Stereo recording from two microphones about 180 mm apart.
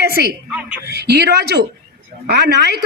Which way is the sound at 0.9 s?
65° right (ahead or behind).